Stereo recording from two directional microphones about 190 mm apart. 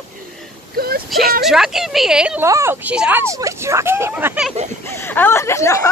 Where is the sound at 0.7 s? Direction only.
50° right (ahead or behind).